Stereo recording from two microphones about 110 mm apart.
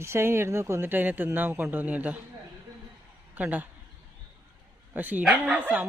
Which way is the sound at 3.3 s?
15° right (ahead or behind).